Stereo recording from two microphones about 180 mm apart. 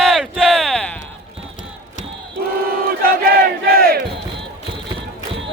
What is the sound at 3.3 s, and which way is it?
Battle cry, 55° right (ahead or behind).